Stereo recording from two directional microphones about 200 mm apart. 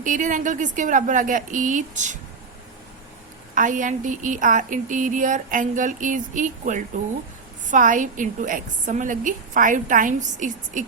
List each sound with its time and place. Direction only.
0.0 s a woman's voice: 40° right (ahead or behind)
3.5 s a woman's voice: 40° right (ahead or behind)